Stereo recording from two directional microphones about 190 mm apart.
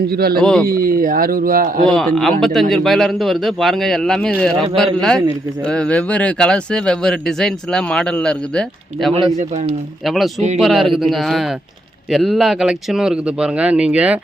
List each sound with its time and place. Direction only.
0.1 s speech: 55° right (ahead or behind)
0.3 s speech: 5° left (ahead or behind)
0.7 s speech: 50° right (ahead or behind)
1.8 s speech: 5° left (ahead or behind)
9.4 s speech: 35° right (ahead or behind)
10.1 s speech: centre (ahead or behind)